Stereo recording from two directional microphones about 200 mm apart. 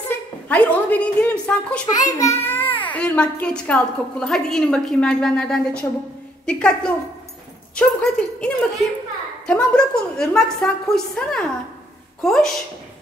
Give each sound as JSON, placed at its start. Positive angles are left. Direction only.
{"t": 0.5, "sound": "a woman's voice", "side_deg": 5}
{"t": 2.0, "sound": "a woman's voice", "side_deg": 15}
{"t": 2.4, "sound": "a sound", "side_deg": 10}
{"t": 2.9, "sound": "a woman's voice", "side_deg": 5}